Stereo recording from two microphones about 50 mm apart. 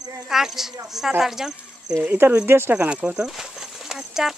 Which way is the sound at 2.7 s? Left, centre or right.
Right.